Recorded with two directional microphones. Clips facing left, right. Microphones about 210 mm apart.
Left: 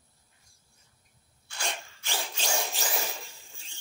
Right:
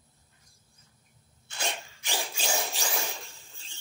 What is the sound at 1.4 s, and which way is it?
Sneeze, 20° right (ahead or behind).